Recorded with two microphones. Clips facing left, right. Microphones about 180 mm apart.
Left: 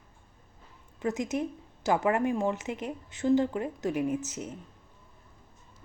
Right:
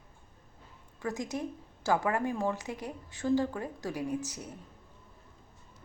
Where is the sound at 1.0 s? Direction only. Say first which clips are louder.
Left 5 dB; 20° left (ahead or behind).